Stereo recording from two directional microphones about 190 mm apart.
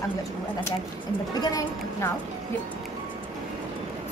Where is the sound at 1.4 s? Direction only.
20° left (ahead or behind).